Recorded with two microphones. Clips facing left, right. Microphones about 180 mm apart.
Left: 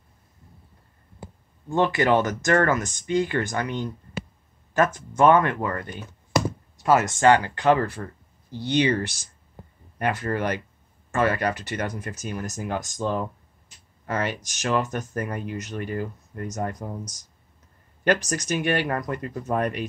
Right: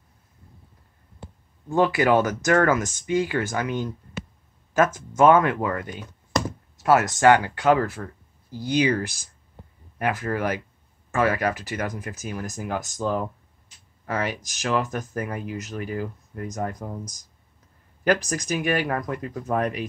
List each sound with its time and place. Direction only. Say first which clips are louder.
1.2 s speech: left 1 dB; 5° right (ahead or behind)
6.3 s a sound: left 2 dB; centre (ahead or behind)
7.5 s speech: even; 5° right (ahead or behind)
18.0 s speech: even; 5° right (ahead or behind)